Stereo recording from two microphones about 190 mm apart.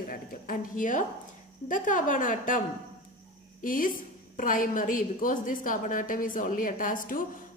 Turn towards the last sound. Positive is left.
turn(degrees=45)  # may be behind; listen again after turning